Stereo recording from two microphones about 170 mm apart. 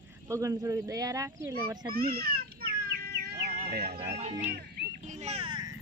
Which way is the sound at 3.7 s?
65° right (ahead or behind).